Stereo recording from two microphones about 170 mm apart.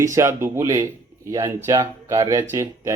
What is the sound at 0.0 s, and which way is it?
Speech, 15° right (ahead or behind).